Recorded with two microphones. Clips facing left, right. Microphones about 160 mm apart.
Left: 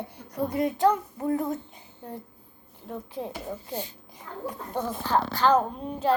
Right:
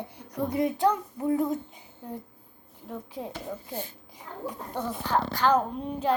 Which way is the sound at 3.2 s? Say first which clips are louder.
Left 2 dB; 15° left (ahead or behind).